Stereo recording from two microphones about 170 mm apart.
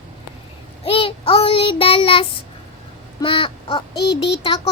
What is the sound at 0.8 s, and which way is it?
A child's voice, 30° left (ahead or behind).